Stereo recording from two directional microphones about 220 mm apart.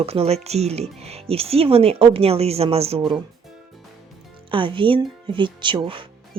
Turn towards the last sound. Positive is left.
turn(degrees=-20)  # may be behind; listen again after turning